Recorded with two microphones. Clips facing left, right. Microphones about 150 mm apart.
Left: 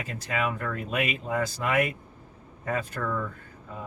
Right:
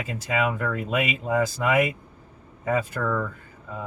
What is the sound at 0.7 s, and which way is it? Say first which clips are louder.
Speech: right 3 dB; 90° right.